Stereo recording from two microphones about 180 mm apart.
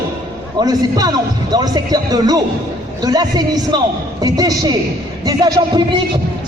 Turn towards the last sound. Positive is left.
turn(degrees=-25)  # may be behind; listen again after turning